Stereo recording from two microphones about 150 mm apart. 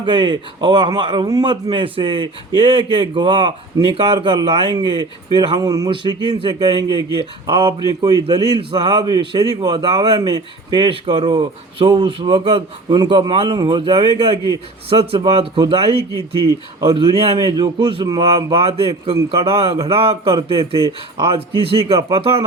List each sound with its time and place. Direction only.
0.0 s a man's voice: 35° right (ahead or behind)
16.9 s speech: 35° right (ahead or behind)
18.5 s speech: 40° right (ahead or behind)